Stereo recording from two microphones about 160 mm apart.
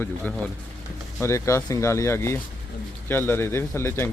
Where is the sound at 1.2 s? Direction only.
15° left (ahead or behind).